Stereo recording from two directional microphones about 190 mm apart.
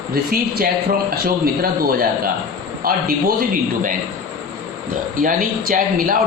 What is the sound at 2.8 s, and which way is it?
Speech, 50° right (ahead or behind).